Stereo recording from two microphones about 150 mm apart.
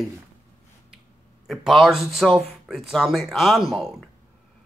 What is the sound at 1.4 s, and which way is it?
Speech, centre (ahead or behind).